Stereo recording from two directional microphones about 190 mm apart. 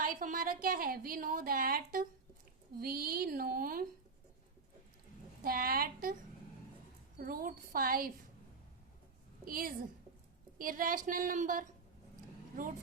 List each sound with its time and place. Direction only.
0.0 s a woman's voice: 45° right (ahead or behind)
5.4 s a woman's voice: 50° right (ahead or behind)
7.2 s a woman's voice: 50° right (ahead or behind)
9.4 s a woman's voice: 50° right (ahead or behind)